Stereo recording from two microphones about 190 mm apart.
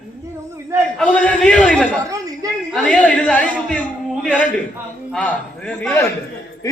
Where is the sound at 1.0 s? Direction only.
5° left (ahead or behind).